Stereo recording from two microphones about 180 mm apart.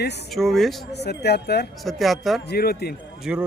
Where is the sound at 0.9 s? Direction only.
65° left (ahead or behind).